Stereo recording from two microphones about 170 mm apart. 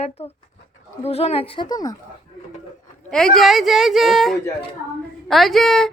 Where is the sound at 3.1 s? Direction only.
5° left (ahead or behind).